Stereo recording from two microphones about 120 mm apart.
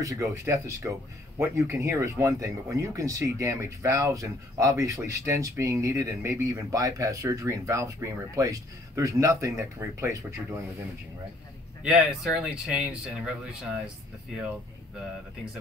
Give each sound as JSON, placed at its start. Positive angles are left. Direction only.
{"t": 0.0, "sound": "speech", "side_deg": -30}
{"t": 11.8, "sound": "speech", "side_deg": -5}